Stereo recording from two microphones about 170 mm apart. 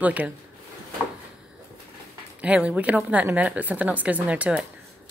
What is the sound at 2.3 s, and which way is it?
Speech, 5° right (ahead or behind).